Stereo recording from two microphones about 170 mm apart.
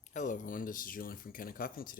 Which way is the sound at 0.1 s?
50° left (ahead or behind).